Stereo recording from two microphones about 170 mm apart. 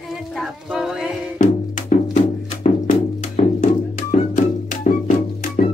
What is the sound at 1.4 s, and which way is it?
Music, 40° left (ahead or behind).